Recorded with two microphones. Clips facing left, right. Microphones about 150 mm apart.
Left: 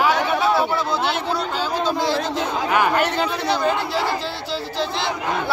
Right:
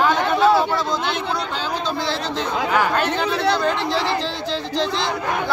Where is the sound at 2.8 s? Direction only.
10° left (ahead or behind).